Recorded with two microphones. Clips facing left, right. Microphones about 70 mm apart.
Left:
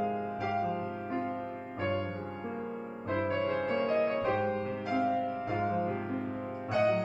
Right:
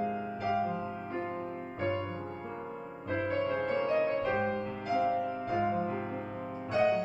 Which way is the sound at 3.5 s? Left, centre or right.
Centre.